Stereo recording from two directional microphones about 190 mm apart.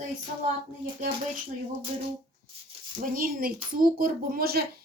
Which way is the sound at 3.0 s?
45° right (ahead or behind).